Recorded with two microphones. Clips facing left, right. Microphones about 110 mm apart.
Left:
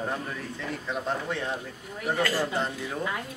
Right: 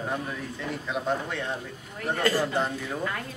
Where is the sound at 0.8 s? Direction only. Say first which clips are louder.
Right 2 dB; centre (ahead or behind).